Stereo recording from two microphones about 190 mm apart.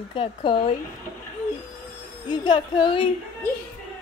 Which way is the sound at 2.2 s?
25° left (ahead or behind).